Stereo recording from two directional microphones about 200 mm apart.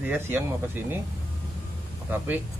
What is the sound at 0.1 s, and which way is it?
Speech, 10° right (ahead or behind).